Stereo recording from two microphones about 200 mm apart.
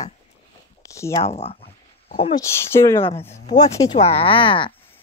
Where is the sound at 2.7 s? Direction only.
10° left (ahead or behind).